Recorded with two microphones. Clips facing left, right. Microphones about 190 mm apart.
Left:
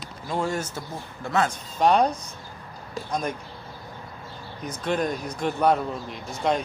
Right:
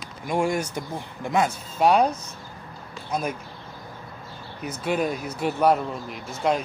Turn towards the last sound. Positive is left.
turn(degrees=-5)  # may be behind; listen again after turning